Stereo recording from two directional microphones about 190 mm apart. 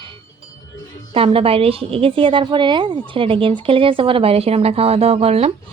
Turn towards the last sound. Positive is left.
turn(degrees=-30)  # may be behind; listen again after turning